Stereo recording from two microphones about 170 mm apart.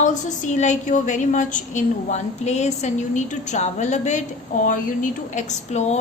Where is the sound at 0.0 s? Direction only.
45° left (ahead or behind).